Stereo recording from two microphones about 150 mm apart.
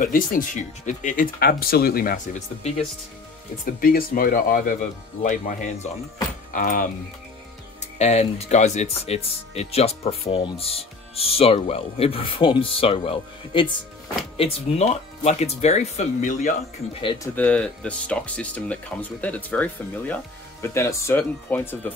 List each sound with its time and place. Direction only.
0.0 s speech: 65° left (ahead or behind)
3.8 s speech: 70° left (ahead or behind)
5.2 s speech: 60° left (ahead or behind)
8.0 s speech: 45° left (ahead or behind)
17.2 s speech: 10° left (ahead or behind)